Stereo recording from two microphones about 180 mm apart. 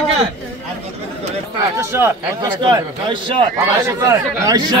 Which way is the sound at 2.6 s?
25° right (ahead or behind).